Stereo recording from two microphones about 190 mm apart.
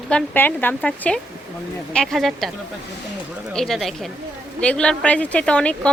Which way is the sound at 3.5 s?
Centre (ahead or behind).